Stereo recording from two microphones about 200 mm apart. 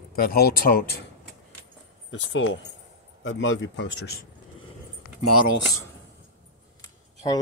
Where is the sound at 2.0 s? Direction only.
75° left (ahead or behind); by 4.3 s 55° left (ahead or behind).